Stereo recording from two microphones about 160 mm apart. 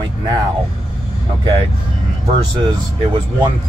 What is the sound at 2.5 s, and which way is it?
Speech, 30° right (ahead or behind).